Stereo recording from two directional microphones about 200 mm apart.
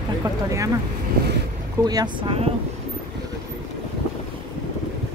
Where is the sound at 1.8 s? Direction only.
20° right (ahead or behind).